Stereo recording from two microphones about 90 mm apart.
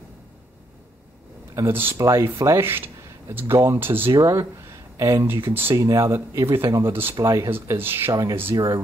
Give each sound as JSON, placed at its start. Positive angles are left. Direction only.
{"t": 1.5, "sound": "speech", "side_deg": -30}
{"t": 2.0, "sound": "speech", "side_deg": -35}
{"t": 4.1, "sound": "speech", "side_deg": -35}
{"t": 7.2, "sound": "speech", "side_deg": -35}
{"t": 8.1, "sound": "speech", "side_deg": -45}